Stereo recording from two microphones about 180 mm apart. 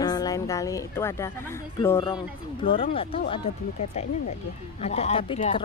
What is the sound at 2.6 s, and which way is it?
Speech, 30° left (ahead or behind).